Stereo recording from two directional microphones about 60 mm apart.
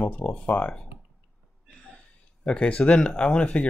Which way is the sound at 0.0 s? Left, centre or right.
Left.